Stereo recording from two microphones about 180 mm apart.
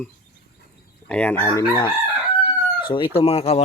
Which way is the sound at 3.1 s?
30° left (ahead or behind).